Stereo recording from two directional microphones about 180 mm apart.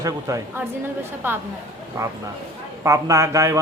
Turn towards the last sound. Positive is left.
turn(degrees=-15)  # may be behind; listen again after turning